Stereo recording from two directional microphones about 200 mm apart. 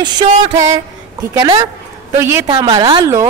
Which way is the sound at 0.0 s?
20° right (ahead or behind).